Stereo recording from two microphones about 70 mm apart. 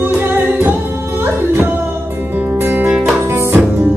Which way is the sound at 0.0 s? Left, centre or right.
Right.